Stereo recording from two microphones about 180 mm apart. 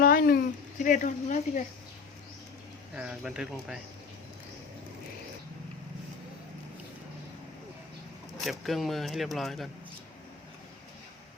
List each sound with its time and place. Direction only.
0.0 s a sound: 55° left (ahead or behind)
2.9 s speech: 5° right (ahead or behind)
8.4 s speech: centre (ahead or behind)